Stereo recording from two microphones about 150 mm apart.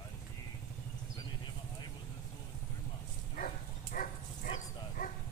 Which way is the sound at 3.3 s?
65° left (ahead or behind).